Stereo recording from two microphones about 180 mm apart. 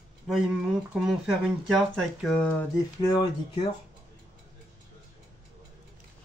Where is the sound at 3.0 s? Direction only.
25° left (ahead or behind).